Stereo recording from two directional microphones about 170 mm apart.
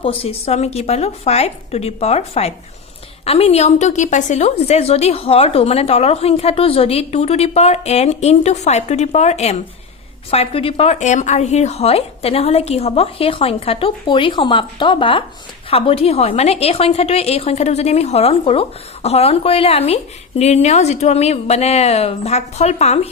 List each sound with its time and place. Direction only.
0.0 s a woman's voice: 35° left (ahead or behind)